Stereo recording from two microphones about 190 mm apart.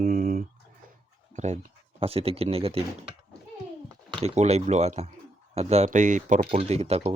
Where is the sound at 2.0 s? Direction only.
30° right (ahead or behind).